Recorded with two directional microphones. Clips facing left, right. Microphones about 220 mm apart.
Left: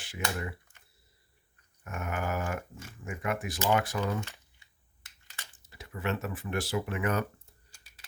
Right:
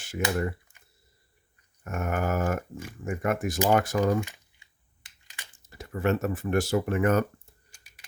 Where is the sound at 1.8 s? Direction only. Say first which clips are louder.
Right 6 dB; 45° right (ahead or behind).